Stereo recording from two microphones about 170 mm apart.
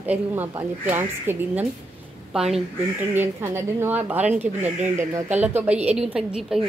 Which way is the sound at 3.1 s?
15° right (ahead or behind).